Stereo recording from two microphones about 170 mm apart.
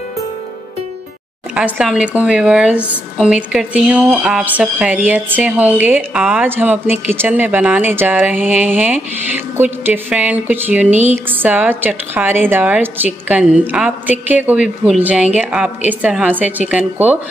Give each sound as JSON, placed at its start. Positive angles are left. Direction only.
{"t": 1.5, "sound": "speech", "side_deg": -5}
{"t": 10.9, "sound": "a sound", "side_deg": -40}
{"t": 11.2, "sound": "speech", "side_deg": -10}